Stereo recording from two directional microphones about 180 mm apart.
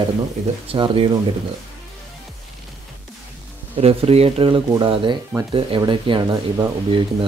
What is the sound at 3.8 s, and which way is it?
Speech, 35° right (ahead or behind).